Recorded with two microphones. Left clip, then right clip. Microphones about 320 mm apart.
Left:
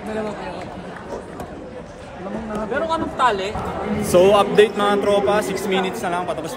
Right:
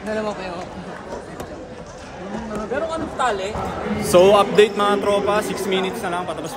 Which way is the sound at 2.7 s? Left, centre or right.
Centre.